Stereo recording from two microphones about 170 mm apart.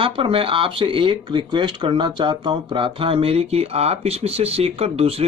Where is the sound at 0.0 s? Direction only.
30° right (ahead or behind).